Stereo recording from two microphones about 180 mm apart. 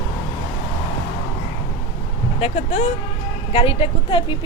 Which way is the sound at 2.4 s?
35° left (ahead or behind).